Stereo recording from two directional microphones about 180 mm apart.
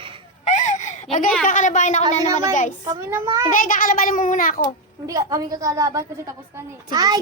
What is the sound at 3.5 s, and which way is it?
A child's voice, 50° left (ahead or behind).